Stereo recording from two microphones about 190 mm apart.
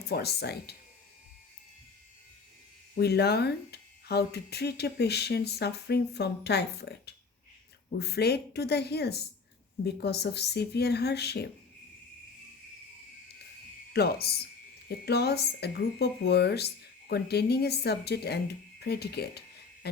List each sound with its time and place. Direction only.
0.1 s speech: 60° left (ahead or behind)
2.9 s speech: 55° left (ahead or behind)
13.9 s speech: 55° left (ahead or behind)